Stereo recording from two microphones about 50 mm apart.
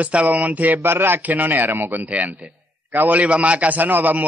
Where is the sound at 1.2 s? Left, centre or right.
Right.